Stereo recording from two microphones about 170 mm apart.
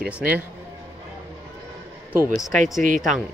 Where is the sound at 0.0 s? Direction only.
60° right (ahead or behind).